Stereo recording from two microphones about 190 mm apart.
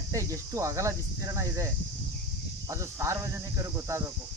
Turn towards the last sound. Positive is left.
turn(degrees=-15)  # may be behind; listen again after turning